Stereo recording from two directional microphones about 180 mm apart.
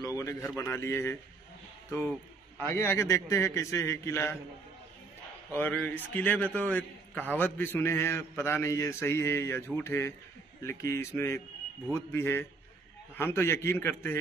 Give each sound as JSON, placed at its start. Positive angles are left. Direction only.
{"t": 0.0, "sound": "a sound", "side_deg": 20}
{"t": 0.6, "sound": "a man's voice", "side_deg": 15}
{"t": 2.6, "sound": "a man's voice", "side_deg": 10}
{"t": 5.5, "sound": "a man's voice", "side_deg": 10}